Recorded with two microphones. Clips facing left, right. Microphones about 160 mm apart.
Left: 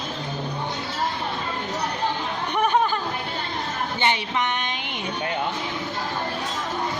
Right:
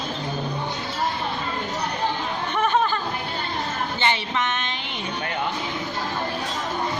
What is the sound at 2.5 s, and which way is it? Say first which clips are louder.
Chatter: left 1 dB; 15° left (ahead or behind).